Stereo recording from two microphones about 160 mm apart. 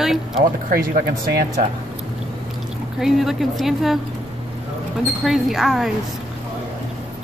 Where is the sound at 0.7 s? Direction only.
65° right (ahead or behind).